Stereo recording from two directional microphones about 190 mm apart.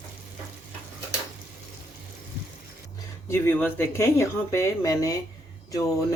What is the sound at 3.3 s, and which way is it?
Speech, 10° left (ahead or behind).